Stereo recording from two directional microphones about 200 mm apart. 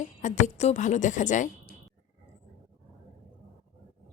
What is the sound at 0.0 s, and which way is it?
A woman's voice, 40° left (ahead or behind).